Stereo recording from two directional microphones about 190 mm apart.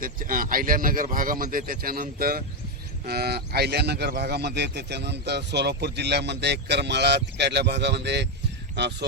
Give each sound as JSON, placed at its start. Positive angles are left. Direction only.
{"t": 0.0, "sound": "a man's voice", "side_deg": -45}